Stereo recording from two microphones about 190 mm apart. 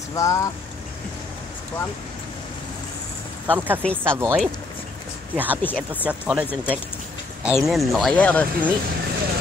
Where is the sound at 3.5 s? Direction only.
10° right (ahead or behind).